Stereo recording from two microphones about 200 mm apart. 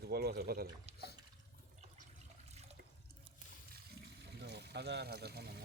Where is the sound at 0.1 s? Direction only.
55° right (ahead or behind).